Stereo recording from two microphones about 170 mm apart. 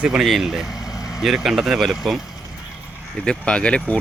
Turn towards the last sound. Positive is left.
turn(degrees=5)  # may be behind; listen again after turning